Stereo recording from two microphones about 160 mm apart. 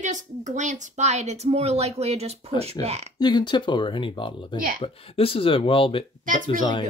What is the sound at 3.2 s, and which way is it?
Speech, 25° left (ahead or behind).